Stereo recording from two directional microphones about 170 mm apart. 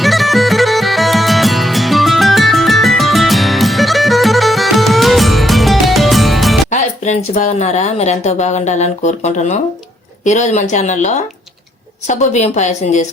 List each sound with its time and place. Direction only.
0.0 s music: centre (ahead or behind)
6.7 s speech: 45° left (ahead or behind)